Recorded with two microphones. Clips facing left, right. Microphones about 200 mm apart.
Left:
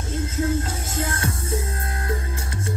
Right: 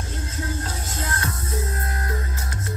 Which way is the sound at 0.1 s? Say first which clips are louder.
Left 9 dB; 25° left (ahead or behind).